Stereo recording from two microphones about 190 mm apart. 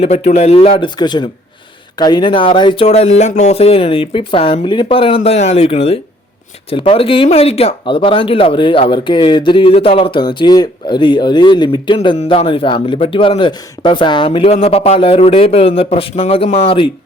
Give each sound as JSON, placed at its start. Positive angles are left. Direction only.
{"t": 0.0, "sound": "speech", "side_deg": 35}